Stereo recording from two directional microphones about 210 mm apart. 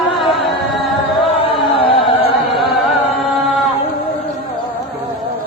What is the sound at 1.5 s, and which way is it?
Music, 25° left (ahead or behind).